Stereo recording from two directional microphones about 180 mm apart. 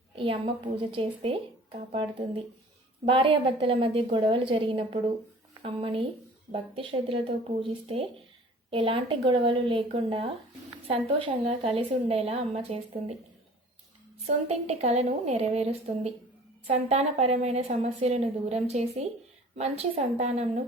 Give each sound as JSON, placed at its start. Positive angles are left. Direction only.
{"t": 0.2, "sound": "a woman's voice", "side_deg": -30}
{"t": 14.3, "sound": "a woman's voice", "side_deg": -35}